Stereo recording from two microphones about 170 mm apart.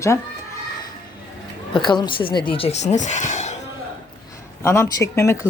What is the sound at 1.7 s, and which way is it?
Speech, 25° left (ahead or behind).